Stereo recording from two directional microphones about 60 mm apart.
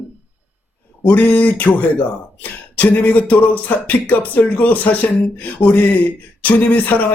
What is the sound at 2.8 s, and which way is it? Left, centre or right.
Speech, left.